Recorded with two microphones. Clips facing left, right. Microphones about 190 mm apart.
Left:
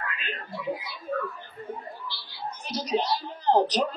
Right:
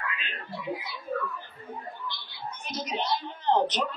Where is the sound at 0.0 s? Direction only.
45° left (ahead or behind).